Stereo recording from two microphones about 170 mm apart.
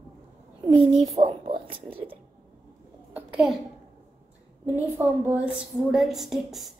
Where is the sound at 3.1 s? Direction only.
5° right (ahead or behind).